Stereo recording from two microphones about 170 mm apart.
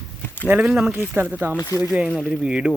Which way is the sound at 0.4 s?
10° right (ahead or behind).